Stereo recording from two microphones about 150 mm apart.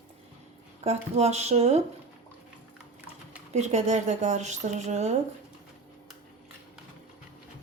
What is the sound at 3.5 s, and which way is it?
Speech, 50° right (ahead or behind).